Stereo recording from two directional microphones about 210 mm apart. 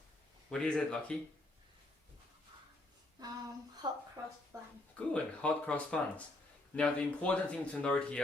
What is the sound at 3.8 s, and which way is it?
Speech, 20° right (ahead or behind).